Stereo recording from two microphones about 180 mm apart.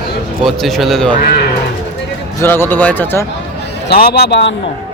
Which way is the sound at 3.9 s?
60° left (ahead or behind).